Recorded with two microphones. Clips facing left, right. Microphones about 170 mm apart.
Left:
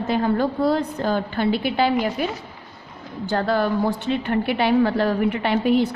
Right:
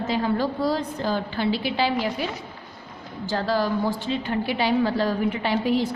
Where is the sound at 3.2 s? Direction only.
55° left (ahead or behind).